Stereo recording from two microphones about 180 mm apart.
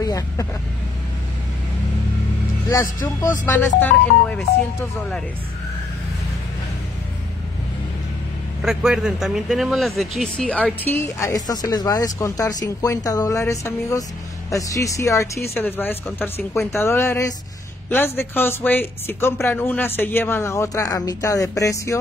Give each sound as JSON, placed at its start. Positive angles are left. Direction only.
{"t": 0.0, "sound": "vehicle", "side_deg": 20}
{"t": 3.4, "sound": "speech", "side_deg": 10}
{"t": 8.6, "sound": "speech", "side_deg": -5}